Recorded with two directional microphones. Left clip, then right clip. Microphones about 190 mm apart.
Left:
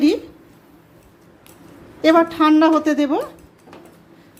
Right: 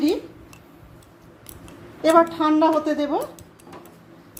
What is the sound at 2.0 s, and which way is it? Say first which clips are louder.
A woman's voice: left 2 dB; 30° left (ahead or behind).